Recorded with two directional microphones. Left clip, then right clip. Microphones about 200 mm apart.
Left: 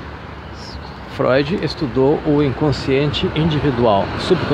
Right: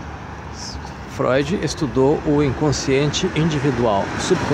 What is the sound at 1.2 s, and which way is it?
Speech, 5° left (ahead or behind).